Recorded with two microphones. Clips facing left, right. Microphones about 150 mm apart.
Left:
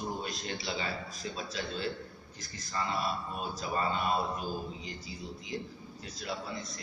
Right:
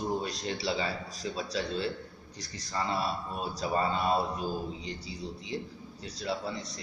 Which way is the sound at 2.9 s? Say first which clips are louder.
Right 2 dB; 35° right (ahead or behind).